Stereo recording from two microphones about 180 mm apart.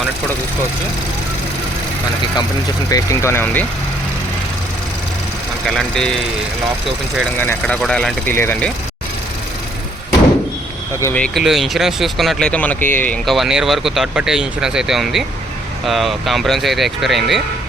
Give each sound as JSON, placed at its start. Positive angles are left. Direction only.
{"t": 2.9, "sound": "speech", "side_deg": 15}
{"t": 5.6, "sound": "speech", "side_deg": 0}
{"t": 7.3, "sound": "speech", "side_deg": 10}
{"t": 11.0, "sound": "speech", "side_deg": 5}